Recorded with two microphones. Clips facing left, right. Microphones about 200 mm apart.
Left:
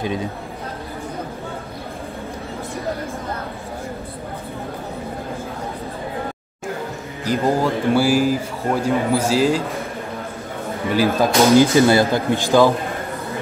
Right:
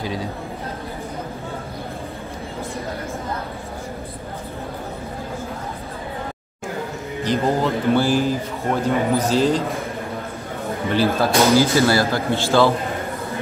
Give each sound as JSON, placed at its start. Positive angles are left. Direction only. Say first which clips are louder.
{"t": 0.0, "sound": "speech", "louder": "left 3 dB", "side_deg": 20}
{"t": 7.2, "sound": "speech", "louder": "left 1 dB", "side_deg": 10}
{"t": 10.9, "sound": "speech", "louder": "left 2 dB", "side_deg": 15}